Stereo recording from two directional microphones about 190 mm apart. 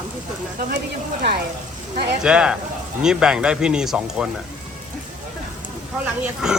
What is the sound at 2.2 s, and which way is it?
Speech, 5° right (ahead or behind).